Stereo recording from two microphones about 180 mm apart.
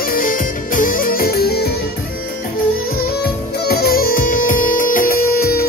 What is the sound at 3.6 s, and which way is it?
Music, 60° left (ahead or behind).